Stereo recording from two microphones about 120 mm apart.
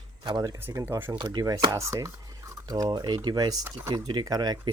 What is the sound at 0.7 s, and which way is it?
Speech, 20° right (ahead or behind).